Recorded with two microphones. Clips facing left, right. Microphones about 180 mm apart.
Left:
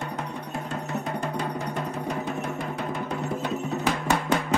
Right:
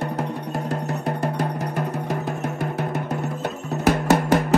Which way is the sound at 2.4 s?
70° right (ahead or behind).